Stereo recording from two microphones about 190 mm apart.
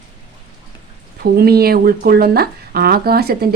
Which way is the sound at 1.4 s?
55° right (ahead or behind).